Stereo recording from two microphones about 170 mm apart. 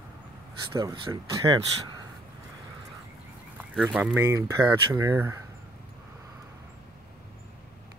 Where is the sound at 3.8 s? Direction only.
5° right (ahead or behind).